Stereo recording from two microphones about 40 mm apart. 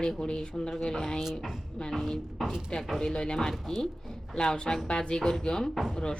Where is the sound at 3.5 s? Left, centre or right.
Centre.